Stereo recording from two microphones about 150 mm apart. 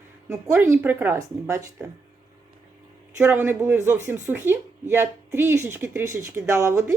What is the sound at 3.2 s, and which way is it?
Speech, 15° right (ahead or behind).